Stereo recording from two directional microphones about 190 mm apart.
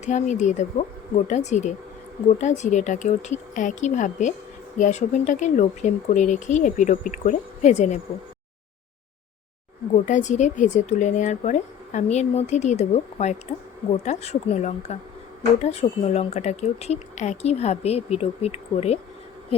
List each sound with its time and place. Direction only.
0.0 s a woman's voice: 40° left (ahead or behind)
10.1 s a woman's voice: 40° left (ahead or behind)